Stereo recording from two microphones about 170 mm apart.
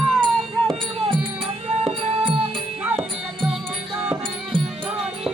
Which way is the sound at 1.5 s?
35° right (ahead or behind).